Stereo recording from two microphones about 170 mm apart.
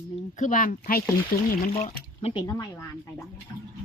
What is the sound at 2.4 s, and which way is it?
Speech, 20° left (ahead or behind).